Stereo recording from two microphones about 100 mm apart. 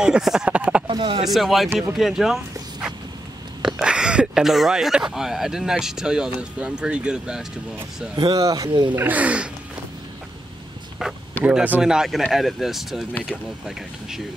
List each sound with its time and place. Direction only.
0.0 s speech: 5° right (ahead or behind)
0.8 s speech: 60° right (ahead or behind)
1.2 s speech: centre (ahead or behind)
8.2 s speech: 40° right (ahead or behind)
8.9 s speech: 20° right (ahead or behind)
11.4 s speech: 15° right (ahead or behind)